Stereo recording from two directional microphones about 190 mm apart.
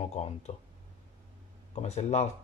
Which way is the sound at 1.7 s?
35° left (ahead or behind).